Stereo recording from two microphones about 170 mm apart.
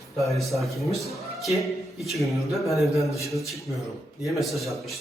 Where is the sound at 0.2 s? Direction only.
Centre (ahead or behind).